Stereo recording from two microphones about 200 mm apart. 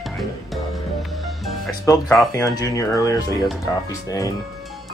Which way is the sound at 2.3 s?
15° left (ahead or behind).